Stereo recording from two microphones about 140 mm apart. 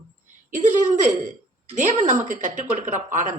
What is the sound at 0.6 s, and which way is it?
Speech, 65° right (ahead or behind).